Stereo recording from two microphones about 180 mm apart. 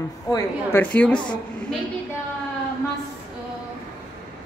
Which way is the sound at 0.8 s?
5° left (ahead or behind).